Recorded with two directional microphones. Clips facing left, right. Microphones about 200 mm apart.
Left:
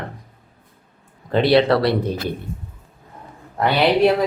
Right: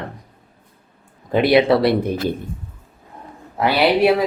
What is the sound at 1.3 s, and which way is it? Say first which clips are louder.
Speech: right 1 dB; 10° right (ahead or behind).